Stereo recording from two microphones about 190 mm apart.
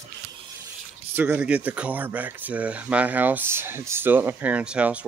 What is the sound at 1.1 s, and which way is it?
Speech, 10° right (ahead or behind).